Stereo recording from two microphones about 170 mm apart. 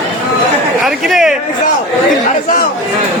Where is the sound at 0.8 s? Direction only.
Centre (ahead or behind).